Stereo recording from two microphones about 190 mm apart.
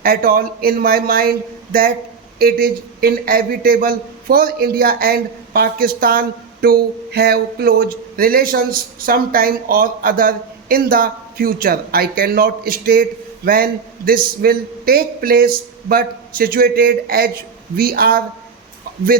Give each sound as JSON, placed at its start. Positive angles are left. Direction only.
{"t": 0.0, "sound": "a man's voice", "side_deg": -50}